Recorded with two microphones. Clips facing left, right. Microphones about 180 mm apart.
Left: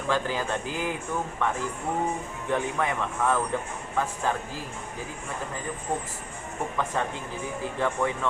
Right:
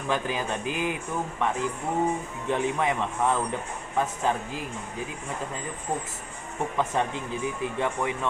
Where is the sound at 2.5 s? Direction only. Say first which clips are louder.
Right 2 dB; 20° right (ahead or behind).